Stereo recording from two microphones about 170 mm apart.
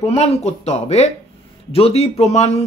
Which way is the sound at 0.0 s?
40° left (ahead or behind).